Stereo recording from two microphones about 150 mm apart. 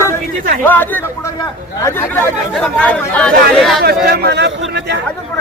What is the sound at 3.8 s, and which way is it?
Speech, 90° right.